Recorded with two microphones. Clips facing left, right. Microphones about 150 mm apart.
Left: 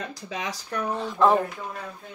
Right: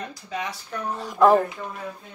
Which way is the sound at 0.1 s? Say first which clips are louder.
Right 1 dB; 90° left.